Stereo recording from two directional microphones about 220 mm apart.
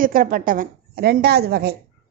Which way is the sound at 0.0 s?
40° right (ahead or behind).